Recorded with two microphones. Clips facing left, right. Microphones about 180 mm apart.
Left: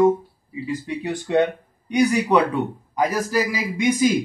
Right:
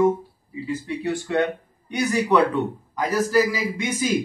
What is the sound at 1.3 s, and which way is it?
Speech, 20° left (ahead or behind).